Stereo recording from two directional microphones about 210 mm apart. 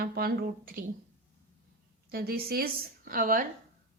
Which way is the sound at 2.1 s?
45° right (ahead or behind).